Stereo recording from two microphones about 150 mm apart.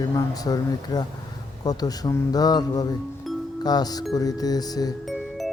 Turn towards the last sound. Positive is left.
turn(degrees=25)  # may be behind; listen again after turning